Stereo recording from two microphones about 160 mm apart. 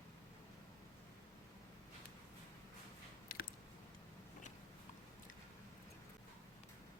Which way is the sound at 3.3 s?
65° left (ahead or behind).